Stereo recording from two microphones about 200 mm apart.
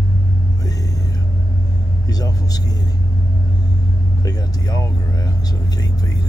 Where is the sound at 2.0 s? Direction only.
20° left (ahead or behind).